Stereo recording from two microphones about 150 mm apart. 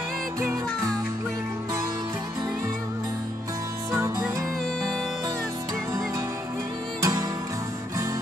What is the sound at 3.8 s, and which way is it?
Music, 20° right (ahead or behind).